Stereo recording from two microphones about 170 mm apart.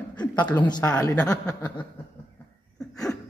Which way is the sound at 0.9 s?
10° left (ahead or behind).